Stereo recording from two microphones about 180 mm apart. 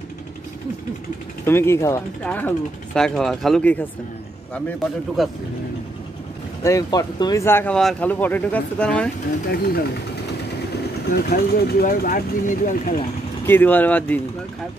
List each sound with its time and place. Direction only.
1.4 s a man's voice: 15° left (ahead or behind)
6.6 s speech: 20° left (ahead or behind)
9.5 s speech: 60° left (ahead or behind)
11.1 s speech: 55° left (ahead or behind)
13.5 s speech: 10° left (ahead or behind)